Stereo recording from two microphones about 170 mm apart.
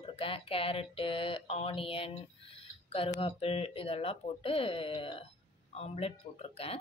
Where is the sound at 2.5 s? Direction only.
35° left (ahead or behind).